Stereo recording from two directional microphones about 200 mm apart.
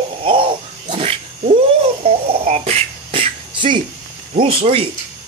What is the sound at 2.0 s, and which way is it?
Beatboxing, 30° right (ahead or behind).